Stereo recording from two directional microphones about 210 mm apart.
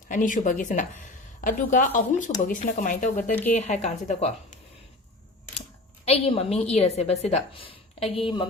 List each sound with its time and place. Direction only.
0.1 s speech: 35° left (ahead or behind)
6.1 s a woman's voice: 25° left (ahead or behind)